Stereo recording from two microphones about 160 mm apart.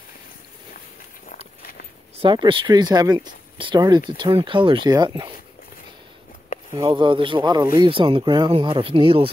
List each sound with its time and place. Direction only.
1.6 s a sound: 70° left (ahead or behind)
2.2 s speech: 30° right (ahead or behind)
6.7 s speech: 25° right (ahead or behind)